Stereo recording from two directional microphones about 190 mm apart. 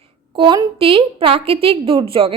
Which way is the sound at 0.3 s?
25° right (ahead or behind).